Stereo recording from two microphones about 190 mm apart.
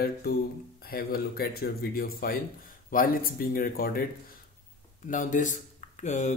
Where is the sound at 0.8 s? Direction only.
50° left (ahead or behind).